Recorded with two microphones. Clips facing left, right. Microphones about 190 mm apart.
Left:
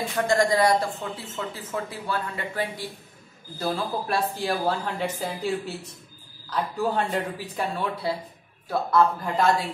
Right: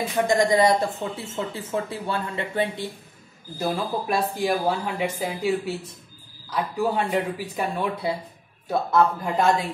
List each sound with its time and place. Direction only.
0.1 s speech: 20° right (ahead or behind)